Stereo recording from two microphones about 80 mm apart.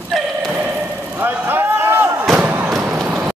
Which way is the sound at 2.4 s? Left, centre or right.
Centre.